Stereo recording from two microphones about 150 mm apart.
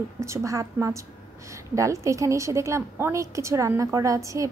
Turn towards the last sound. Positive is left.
turn(degrees=-20)  # may be behind; listen again after turning